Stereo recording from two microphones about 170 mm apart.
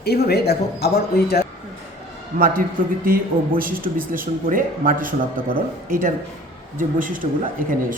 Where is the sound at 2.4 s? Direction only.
55° right (ahead or behind).